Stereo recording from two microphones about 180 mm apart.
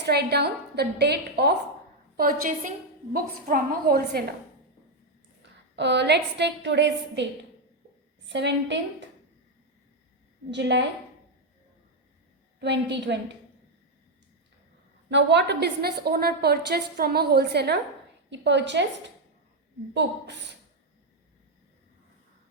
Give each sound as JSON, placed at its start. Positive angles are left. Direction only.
{"t": 0.0, "sound": "a woman's voice", "side_deg": -65}
{"t": 2.1, "sound": "a woman's voice", "side_deg": -55}
{"t": 5.4, "sound": "a woman's voice", "side_deg": -75}
{"t": 8.3, "sound": "a woman's voice", "side_deg": -75}
{"t": 10.5, "sound": "a woman's voice", "side_deg": -75}
{"t": 12.5, "sound": "a woman's voice", "side_deg": -75}
{"t": 15.1, "sound": "a woman's voice", "side_deg": -75}
{"t": 18.3, "sound": "a woman's voice", "side_deg": -75}
{"t": 19.9, "sound": "a woman's voice", "side_deg": -75}